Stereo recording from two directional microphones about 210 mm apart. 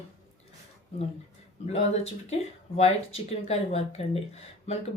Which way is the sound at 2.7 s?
30° left (ahead or behind).